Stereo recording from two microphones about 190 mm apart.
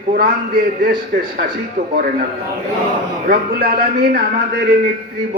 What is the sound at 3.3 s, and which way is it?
Speech, 55° right (ahead or behind).